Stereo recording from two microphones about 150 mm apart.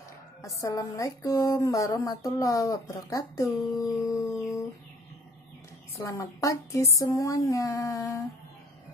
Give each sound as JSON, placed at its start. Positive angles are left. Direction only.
{"t": 0.6, "sound": "speech", "side_deg": 20}
{"t": 3.7, "sound": "howl", "side_deg": 20}
{"t": 5.9, "sound": "speech", "side_deg": 20}